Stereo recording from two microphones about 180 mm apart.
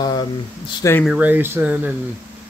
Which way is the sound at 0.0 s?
25° left (ahead or behind).